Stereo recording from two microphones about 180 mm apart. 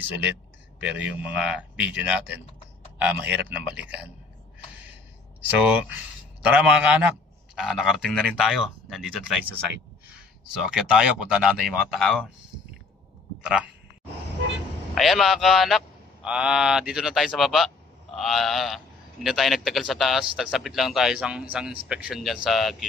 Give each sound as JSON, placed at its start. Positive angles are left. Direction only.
{"t": 0.7, "sound": "speech", "side_deg": -10}
{"t": 5.5, "sound": "a man's voice", "side_deg": -10}
{"t": 10.7, "sound": "a man's voice", "side_deg": -5}
{"t": 15.0, "sound": "a man's voice", "side_deg": 0}